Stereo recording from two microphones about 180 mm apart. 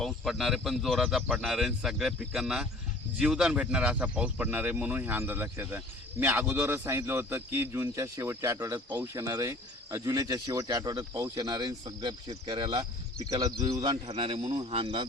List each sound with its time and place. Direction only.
0.0 s speech: centre (ahead or behind); by 15.0 s 30° right (ahead or behind)